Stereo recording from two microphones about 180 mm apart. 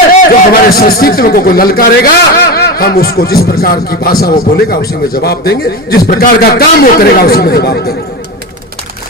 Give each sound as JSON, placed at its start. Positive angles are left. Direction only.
{"t": 0.2, "sound": "a man's voice", "side_deg": 55}